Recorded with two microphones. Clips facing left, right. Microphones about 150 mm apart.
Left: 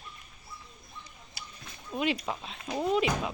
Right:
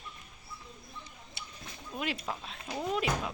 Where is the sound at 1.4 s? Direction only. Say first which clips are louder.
Left 1 dB; 25° right (ahead or behind).